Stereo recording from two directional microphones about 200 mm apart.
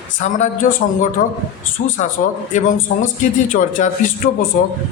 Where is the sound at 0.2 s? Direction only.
40° left (ahead or behind).